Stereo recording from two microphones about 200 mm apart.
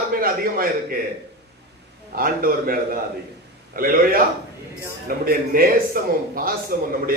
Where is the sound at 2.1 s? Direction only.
45° right (ahead or behind).